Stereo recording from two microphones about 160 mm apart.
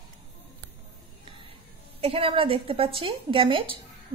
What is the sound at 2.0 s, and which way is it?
A woman's voice, 35° right (ahead or behind).